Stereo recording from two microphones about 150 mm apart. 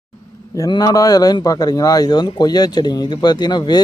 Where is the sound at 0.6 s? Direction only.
25° left (ahead or behind).